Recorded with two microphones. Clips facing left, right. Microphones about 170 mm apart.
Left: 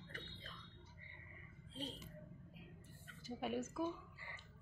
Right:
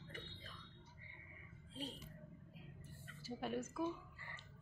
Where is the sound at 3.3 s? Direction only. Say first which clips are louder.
Left 1 dB; 5° left (ahead or behind).